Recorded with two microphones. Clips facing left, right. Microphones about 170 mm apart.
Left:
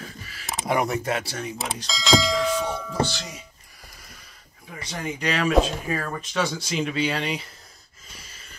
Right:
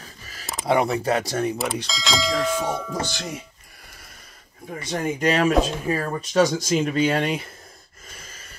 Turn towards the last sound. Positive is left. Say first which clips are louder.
# right 5 dB
turn(degrees=-50)  # may be behind; listen again after turning